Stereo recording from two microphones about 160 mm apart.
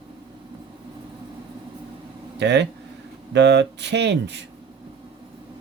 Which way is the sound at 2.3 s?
90° right.